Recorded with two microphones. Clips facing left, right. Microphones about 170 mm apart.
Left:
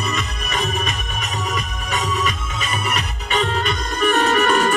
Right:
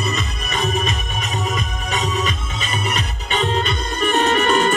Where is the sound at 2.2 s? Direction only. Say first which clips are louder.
Even; 25° right (ahead or behind).